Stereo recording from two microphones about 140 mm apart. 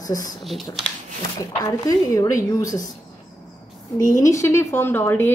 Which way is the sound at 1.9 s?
25° left (ahead or behind).